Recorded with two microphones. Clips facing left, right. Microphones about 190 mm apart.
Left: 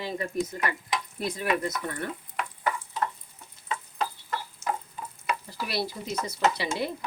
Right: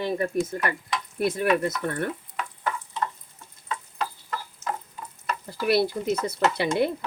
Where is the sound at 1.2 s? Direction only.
60° right (ahead or behind).